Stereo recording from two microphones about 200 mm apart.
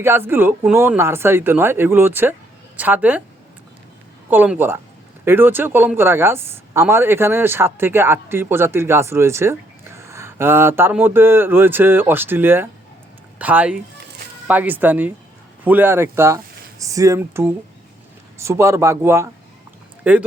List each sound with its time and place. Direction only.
0.0 s speech: 10° right (ahead or behind)
4.3 s speech: 10° right (ahead or behind)